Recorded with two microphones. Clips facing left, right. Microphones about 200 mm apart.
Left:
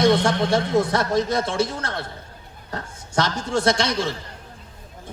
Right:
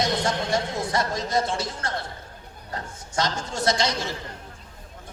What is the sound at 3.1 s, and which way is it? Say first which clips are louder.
Speech: left 5 dB; 65° left (ahead or behind).